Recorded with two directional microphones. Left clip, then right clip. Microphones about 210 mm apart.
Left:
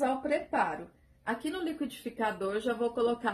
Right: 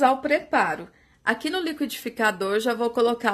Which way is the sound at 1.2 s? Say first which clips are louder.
Right 9 dB; 35° right (ahead or behind).